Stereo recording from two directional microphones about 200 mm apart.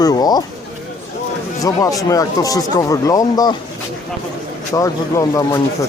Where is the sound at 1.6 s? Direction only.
15° left (ahead or behind).